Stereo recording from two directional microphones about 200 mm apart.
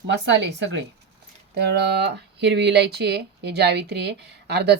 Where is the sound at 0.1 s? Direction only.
60° right (ahead or behind).